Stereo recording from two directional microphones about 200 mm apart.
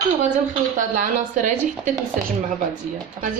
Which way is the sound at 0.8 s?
40° right (ahead or behind).